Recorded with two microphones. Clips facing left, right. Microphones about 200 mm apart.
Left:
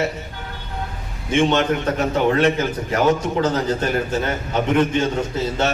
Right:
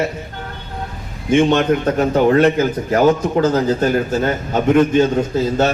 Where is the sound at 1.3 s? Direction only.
45° right (ahead or behind).